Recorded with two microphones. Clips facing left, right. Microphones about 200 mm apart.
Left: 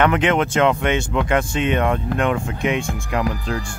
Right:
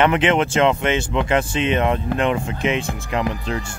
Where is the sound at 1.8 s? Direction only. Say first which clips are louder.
Even; 5° right (ahead or behind).